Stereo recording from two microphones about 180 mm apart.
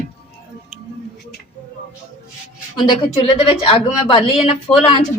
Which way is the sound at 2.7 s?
25° left (ahead or behind).